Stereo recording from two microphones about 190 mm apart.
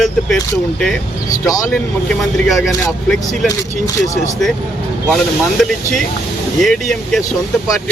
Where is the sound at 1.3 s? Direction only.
20° left (ahead or behind).